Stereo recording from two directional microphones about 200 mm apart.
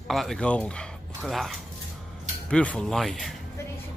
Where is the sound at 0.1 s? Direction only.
Centre (ahead or behind).